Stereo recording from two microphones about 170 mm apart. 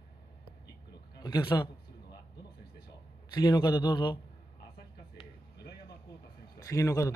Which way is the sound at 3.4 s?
25° left (ahead or behind).